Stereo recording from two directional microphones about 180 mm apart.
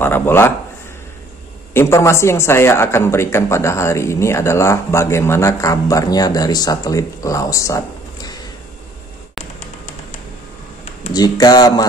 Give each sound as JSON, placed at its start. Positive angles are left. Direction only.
{"t": 0.0, "sound": "a man's voice", "side_deg": 10}
{"t": 1.7, "sound": "a man's voice", "side_deg": 15}
{"t": 11.1, "sound": "speech", "side_deg": 20}